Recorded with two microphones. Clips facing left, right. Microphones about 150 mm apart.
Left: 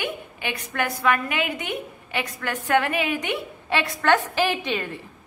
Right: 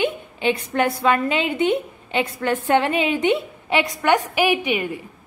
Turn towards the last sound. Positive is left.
turn(degrees=-15)  # may be behind; listen again after turning